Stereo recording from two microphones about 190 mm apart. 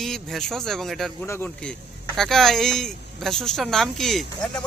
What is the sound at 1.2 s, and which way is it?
Speech, 10° left (ahead or behind).